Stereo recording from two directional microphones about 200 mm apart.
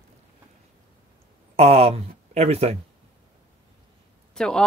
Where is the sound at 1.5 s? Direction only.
30° right (ahead or behind).